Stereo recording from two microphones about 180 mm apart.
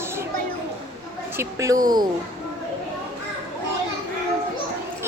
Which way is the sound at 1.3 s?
15° right (ahead or behind).